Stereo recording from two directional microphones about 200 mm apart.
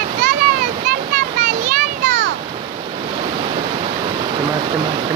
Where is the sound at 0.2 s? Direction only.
45° right (ahead or behind).